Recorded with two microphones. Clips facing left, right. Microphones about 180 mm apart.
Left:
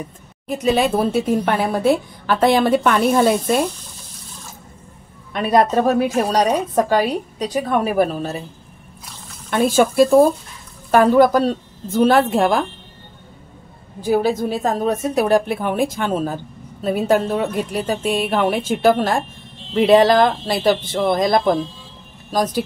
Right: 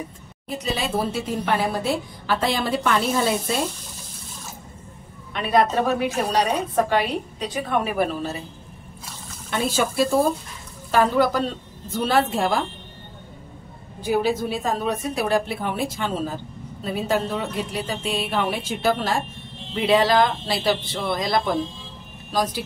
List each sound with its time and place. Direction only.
0.5 s a woman's voice: 55° left (ahead or behind)
5.3 s a woman's voice: 45° left (ahead or behind)
9.5 s speech: 50° left (ahead or behind)
14.0 s speech: 45° left (ahead or behind)